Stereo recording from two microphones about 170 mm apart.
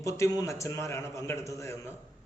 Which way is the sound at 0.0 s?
15° left (ahead or behind).